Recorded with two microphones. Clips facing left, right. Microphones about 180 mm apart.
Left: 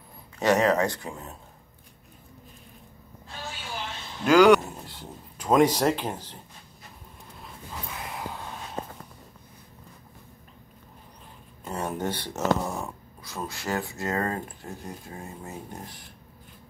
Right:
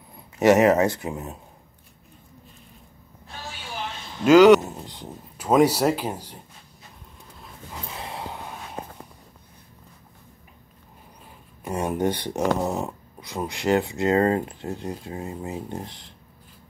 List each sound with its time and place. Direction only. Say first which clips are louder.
0.4 s speech: right 5 dB; 20° right (ahead or behind)
4.2 s a sound: right 4 dB; 10° right (ahead or behind)
5.5 s speech: right 2 dB; 10° right (ahead or behind)
7.9 s gasp: right 2 dB; 30° right (ahead or behind)
11.6 s speech: right 6 dB; 15° right (ahead or behind)